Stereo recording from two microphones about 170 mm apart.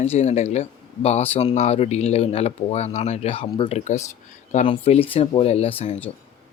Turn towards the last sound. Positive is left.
turn(degrees=35)  # may be behind; listen again after turning